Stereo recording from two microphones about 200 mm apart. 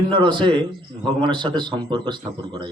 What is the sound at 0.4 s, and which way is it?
A man's voice, 25° right (ahead or behind).